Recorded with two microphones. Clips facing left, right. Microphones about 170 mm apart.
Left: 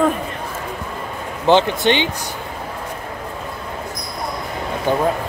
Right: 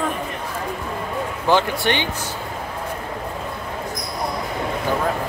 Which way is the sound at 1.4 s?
20° left (ahead or behind).